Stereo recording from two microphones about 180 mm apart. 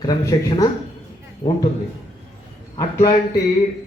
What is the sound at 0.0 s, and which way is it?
Speech, 25° left (ahead or behind).